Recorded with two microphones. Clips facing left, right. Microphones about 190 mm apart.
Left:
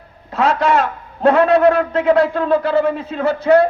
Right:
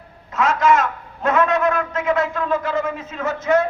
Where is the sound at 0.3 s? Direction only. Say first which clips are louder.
Left 1 dB; 35° left (ahead or behind).